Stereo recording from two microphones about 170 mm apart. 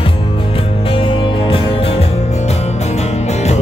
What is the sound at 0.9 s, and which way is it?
Music, 30° left (ahead or behind).